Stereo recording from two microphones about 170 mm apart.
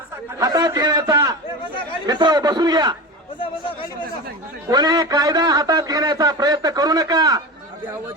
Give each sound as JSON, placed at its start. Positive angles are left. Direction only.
{"t": 0.3, "sound": "a sound", "side_deg": -20}
{"t": 2.0, "sound": "a man's voice", "side_deg": -25}
{"t": 4.7, "sound": "a man's voice", "side_deg": -25}